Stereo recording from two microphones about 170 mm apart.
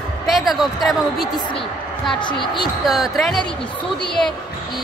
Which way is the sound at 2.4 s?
25° left (ahead or behind).